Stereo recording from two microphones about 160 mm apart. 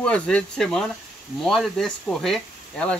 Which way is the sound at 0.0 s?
5° left (ahead or behind).